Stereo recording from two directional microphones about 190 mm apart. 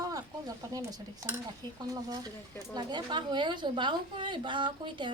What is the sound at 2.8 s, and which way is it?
A woman's voice, 25° right (ahead or behind).